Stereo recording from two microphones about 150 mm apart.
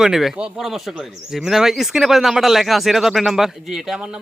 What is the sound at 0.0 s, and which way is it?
Speech, centre (ahead or behind).